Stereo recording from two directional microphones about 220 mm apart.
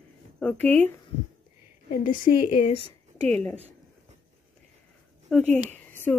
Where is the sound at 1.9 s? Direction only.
40° left (ahead or behind).